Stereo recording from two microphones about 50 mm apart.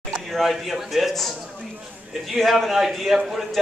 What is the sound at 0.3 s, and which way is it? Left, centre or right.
A man's voice, centre.